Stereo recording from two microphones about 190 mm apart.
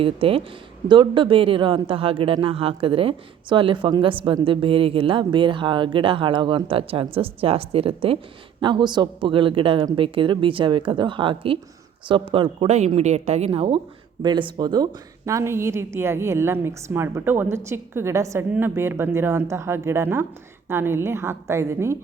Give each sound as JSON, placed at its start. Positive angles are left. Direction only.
{"t": 0.0, "sound": "a man's voice", "side_deg": -30}